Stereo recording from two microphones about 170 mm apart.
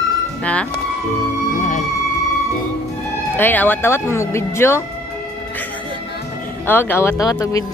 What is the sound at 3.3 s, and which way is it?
Speech, 10° left (ahead or behind).